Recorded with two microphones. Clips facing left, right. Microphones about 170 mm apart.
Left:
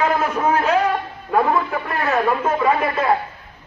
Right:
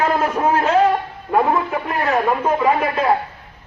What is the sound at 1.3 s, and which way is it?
A man's voice, 20° right (ahead or behind).